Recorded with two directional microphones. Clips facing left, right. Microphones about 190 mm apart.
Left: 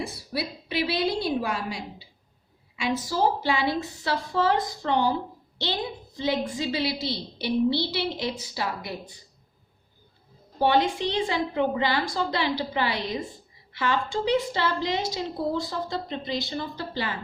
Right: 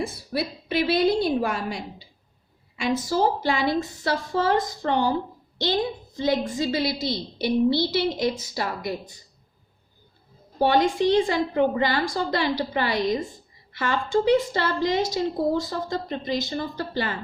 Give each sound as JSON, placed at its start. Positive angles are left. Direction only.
{"t": 0.0, "sound": "a woman's voice", "side_deg": -50}
{"t": 6.1, "sound": "a woman's voice", "side_deg": -45}
{"t": 10.6, "sound": "a woman's voice", "side_deg": -45}